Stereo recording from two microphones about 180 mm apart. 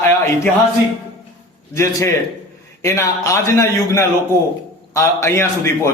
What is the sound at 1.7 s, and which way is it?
A man's voice, 15° left (ahead or behind).